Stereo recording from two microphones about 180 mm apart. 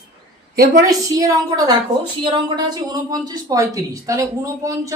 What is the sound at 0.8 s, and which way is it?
A woman's voice, 20° right (ahead or behind).